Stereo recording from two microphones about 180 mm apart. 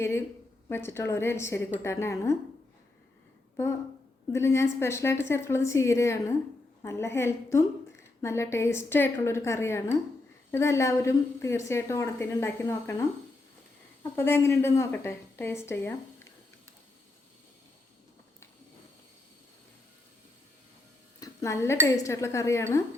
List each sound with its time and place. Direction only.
0.7 s a woman's voice: 15° left (ahead or behind)
4.3 s a woman's voice: 15° left (ahead or behind)
21.2 s a woman's voice: 15° left (ahead or behind)